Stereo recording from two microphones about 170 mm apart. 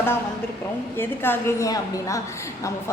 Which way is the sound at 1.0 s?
15° left (ahead or behind).